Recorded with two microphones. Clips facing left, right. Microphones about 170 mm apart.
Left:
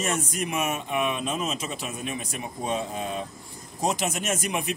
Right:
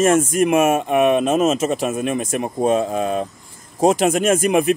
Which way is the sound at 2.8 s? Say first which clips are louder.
Right 10 dB; 65° right (ahead or behind).